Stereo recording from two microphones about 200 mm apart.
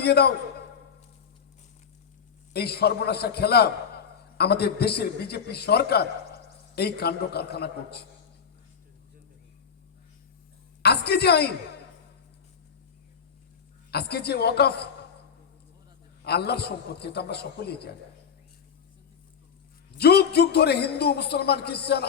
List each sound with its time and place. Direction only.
0.0 s a man's voice: 55° left (ahead or behind)
2.5 s a man's voice: 55° left (ahead or behind)
10.8 s a man's voice: 55° left (ahead or behind)
13.9 s a man's voice: 55° left (ahead or behind)
16.2 s a man's voice: 55° left (ahead or behind)
20.0 s a man's voice: 55° left (ahead or behind)